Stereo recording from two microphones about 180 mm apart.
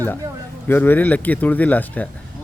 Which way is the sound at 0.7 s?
10° left (ahead or behind).